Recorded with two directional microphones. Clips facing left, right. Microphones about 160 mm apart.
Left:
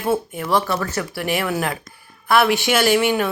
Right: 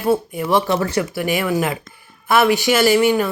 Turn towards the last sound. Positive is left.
turn(degrees=0)  # may be behind; listen again after turning